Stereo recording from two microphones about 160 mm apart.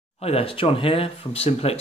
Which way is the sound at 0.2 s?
40° left (ahead or behind).